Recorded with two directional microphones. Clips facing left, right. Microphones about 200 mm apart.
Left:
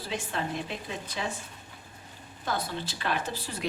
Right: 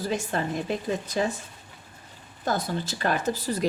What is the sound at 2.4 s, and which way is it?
A woman's voice, 45° right (ahead or behind).